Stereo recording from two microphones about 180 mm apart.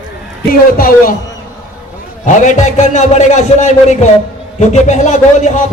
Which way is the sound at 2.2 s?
45° left (ahead or behind).